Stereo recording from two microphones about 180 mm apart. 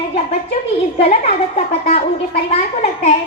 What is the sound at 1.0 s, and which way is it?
A child's voice, 35° left (ahead or behind).